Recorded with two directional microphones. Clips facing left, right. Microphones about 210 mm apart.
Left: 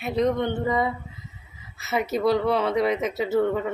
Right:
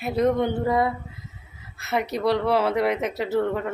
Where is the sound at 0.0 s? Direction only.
5° right (ahead or behind).